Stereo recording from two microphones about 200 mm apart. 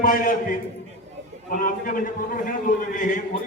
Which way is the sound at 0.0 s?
45° left (ahead or behind).